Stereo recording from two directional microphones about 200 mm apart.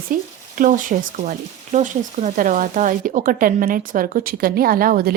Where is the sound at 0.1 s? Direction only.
40° right (ahead or behind).